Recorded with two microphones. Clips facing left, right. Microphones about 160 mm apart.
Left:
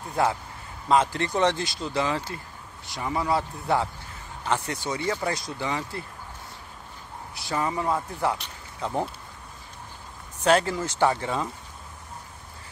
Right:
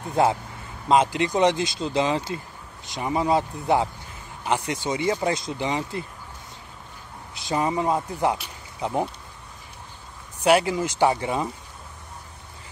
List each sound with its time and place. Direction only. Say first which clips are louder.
0.1 s speech: right 4 dB; 25° right (ahead or behind)
7.3 s speech: right 4 dB; 20° right (ahead or behind)
8.4 s a sound: right 3 dB; 15° right (ahead or behind)
10.4 s speech: right 2 dB; 10° right (ahead or behind)